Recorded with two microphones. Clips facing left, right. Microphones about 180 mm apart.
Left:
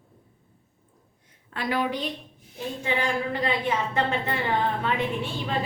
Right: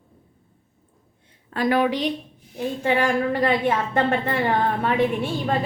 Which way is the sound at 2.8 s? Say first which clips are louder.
Right 6 dB; 50° right (ahead or behind).